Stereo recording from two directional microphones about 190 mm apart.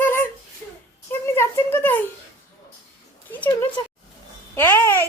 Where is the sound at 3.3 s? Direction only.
10° left (ahead or behind).